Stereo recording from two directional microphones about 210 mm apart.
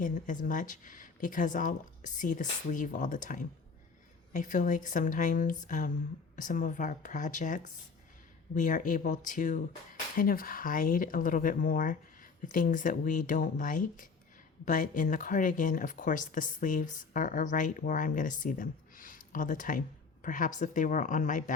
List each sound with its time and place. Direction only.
0.0 s speech: 40° left (ahead or behind)